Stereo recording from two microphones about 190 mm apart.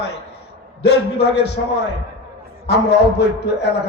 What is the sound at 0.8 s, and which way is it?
Speech, 60° left (ahead or behind).